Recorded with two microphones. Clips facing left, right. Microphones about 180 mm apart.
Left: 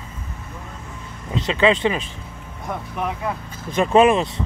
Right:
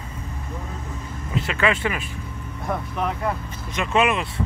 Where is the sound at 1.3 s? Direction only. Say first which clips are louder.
Left 5 dB; 25° left (ahead or behind).